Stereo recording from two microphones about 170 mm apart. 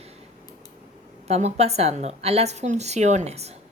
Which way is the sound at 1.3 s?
40° right (ahead or behind).